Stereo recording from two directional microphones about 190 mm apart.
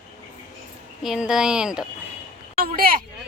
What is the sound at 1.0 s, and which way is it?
Speech, centre (ahead or behind).